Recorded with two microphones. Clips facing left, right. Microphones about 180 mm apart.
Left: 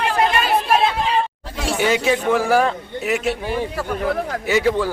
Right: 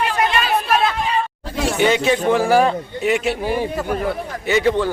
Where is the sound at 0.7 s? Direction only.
30° left (ahead or behind).